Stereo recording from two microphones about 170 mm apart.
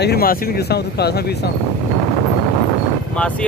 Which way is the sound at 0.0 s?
65° left (ahead or behind).